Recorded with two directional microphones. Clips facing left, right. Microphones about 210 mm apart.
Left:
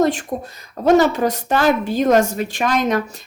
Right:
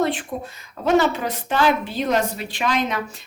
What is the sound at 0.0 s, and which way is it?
Speech, 45° left (ahead or behind).